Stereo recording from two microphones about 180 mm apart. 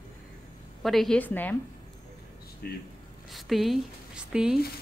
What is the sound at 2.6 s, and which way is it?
Speech, 60° left (ahead or behind).